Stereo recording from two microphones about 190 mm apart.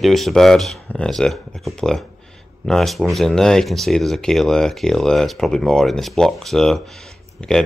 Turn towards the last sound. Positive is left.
turn(degrees=5)  # may be behind; listen again after turning